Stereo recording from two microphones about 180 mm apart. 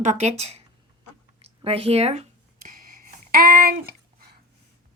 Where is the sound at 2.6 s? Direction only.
50° right (ahead or behind).